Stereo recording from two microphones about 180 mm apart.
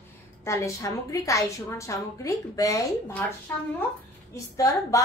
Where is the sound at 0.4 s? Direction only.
15° left (ahead or behind).